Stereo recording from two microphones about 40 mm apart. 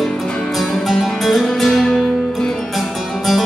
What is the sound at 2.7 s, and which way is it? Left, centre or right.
Music, centre.